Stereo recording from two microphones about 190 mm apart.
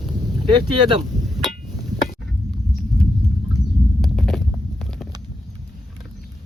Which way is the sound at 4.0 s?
Centre (ahead or behind).